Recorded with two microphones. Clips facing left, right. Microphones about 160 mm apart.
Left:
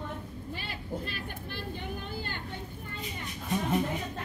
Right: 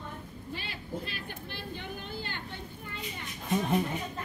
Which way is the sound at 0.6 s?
50° left (ahead or behind).